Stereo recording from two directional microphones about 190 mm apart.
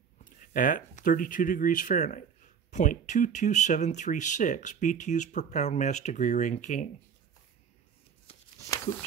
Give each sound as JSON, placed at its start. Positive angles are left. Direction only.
{"t": 0.2, "sound": "speech", "side_deg": 45}